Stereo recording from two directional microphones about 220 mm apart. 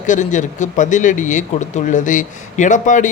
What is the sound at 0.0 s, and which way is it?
Speech, 35° left (ahead or behind).